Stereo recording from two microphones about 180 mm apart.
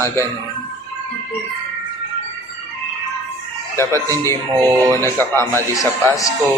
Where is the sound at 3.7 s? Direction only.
15° left (ahead or behind).